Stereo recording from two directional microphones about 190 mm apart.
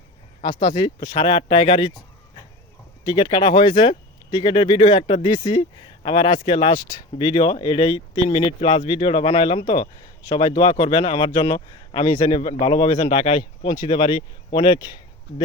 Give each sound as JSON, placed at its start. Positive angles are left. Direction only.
{"t": 0.4, "sound": "speech", "side_deg": 20}
{"t": 3.1, "sound": "speech", "side_deg": 25}